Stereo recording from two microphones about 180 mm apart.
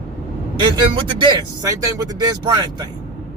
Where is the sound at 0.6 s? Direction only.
25° right (ahead or behind).